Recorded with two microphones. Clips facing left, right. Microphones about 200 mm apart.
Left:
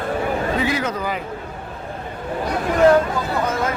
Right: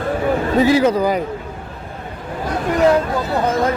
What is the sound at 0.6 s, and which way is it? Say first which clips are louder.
Speech: right 9 dB; 30° right (ahead or behind).